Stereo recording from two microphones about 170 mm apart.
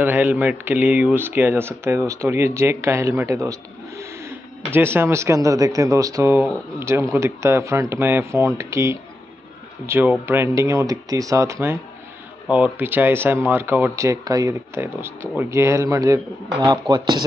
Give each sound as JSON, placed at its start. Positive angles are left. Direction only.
{"t": 0.0, "sound": "speech", "side_deg": -10}